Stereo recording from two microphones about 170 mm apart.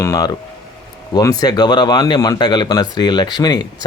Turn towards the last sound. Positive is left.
turn(degrees=25)  # may be behind; listen again after turning